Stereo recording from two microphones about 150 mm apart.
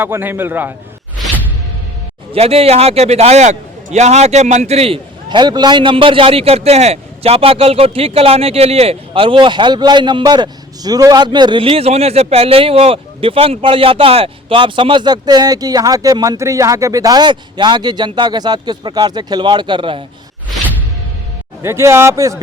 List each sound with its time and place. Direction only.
0.0 s speech: 15° right (ahead or behind)
2.3 s a man's voice: 40° right (ahead or behind)
21.6 s speech: 15° right (ahead or behind)